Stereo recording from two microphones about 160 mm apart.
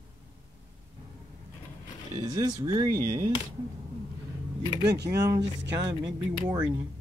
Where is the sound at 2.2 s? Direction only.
20° right (ahead or behind).